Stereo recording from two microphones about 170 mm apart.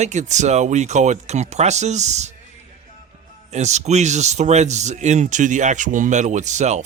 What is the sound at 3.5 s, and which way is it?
Speech, 40° right (ahead or behind).